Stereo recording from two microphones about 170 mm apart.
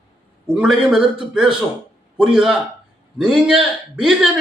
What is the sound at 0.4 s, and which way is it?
A man's voice, centre (ahead or behind).